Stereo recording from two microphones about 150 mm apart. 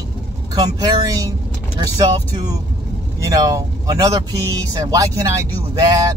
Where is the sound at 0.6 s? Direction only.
30° right (ahead or behind).